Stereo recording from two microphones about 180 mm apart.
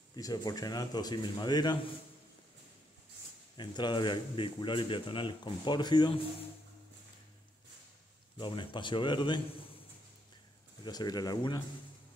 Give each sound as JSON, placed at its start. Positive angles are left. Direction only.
{"t": 0.1, "sound": "speech", "side_deg": 20}
{"t": 3.5, "sound": "speech", "side_deg": 25}
{"t": 8.4, "sound": "speech", "side_deg": 25}
{"t": 10.8, "sound": "speech", "side_deg": 20}